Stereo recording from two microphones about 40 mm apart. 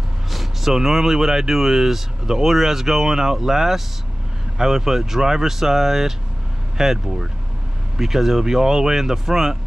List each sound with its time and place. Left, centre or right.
0.3 s speech: centre